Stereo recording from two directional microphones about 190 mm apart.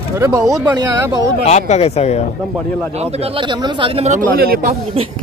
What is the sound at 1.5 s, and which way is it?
Speech, 35° left (ahead or behind).